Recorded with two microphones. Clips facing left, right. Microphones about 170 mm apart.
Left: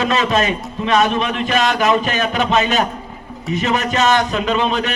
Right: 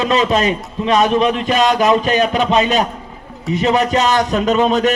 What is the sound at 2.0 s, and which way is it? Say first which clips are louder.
A man's voice: right 4 dB; 35° right (ahead or behind).